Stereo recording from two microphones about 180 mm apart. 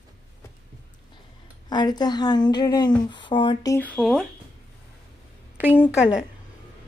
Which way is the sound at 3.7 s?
10° left (ahead or behind).